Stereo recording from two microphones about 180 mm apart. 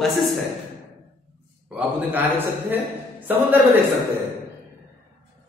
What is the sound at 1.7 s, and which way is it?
A man's voice, 10° right (ahead or behind).